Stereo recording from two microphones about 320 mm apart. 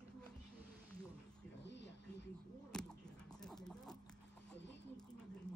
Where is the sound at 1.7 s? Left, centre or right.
Left.